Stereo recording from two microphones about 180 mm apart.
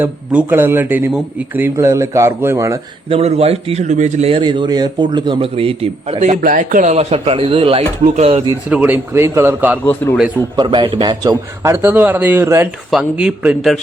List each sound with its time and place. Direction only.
0.0 s speech: 10° right (ahead or behind)
3.1 s a man's voice: 35° right (ahead or behind)
8.7 s speech: 10° right (ahead or behind)
9.8 s a man's voice: 10° left (ahead or behind)
10.6 s speech: 25° right (ahead or behind); by 13.7 s 5° right (ahead or behind)